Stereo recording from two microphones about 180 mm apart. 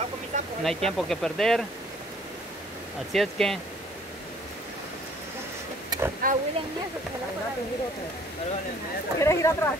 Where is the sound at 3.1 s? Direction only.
Centre (ahead or behind).